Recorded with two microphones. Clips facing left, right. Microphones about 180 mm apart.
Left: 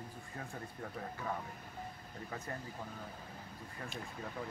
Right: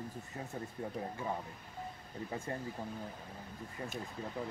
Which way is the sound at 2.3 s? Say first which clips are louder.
Right 4 dB; 25° right (ahead or behind).